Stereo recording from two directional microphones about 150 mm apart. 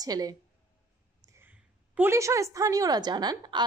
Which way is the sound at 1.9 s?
15° right (ahead or behind).